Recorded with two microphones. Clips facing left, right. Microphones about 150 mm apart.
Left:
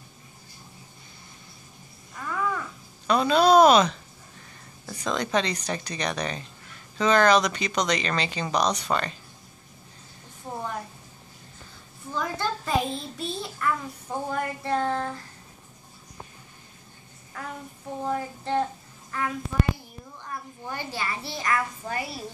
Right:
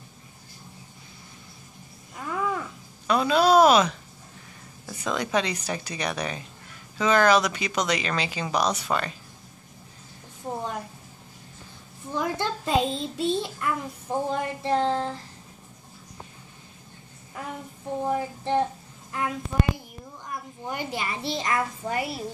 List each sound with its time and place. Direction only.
2.1 s a sound: 25° right (ahead or behind)
3.1 s a sound: 5° right (ahead or behind)
4.8 s speech: 10° right (ahead or behind)
12.1 s a child's voice: 20° right (ahead or behind)
17.4 s a child's voice: 20° right (ahead or behind)
20.2 s a child's voice: 15° right (ahead or behind)